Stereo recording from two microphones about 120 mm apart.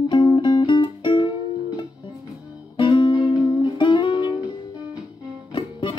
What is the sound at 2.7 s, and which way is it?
Music, 40° left (ahead or behind).